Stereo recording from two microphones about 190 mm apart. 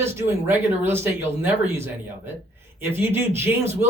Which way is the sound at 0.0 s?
10° right (ahead or behind).